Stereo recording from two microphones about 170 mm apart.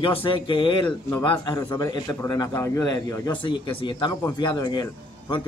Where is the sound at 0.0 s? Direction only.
30° left (ahead or behind).